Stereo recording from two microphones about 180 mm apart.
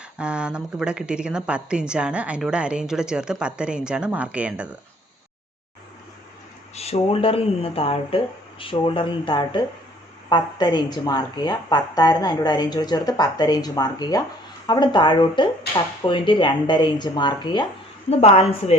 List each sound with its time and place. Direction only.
0.2 s a woman's voice: 5° right (ahead or behind)
6.7 s a woman's voice: 35° left (ahead or behind)